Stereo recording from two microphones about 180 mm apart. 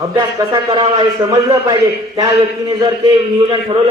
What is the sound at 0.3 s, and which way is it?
A man's voice, 25° right (ahead or behind).